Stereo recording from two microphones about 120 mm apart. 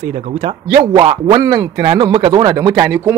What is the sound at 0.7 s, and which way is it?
Speech, 40° right (ahead or behind).